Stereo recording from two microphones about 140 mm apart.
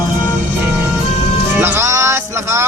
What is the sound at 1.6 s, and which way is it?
Music, 15° right (ahead or behind).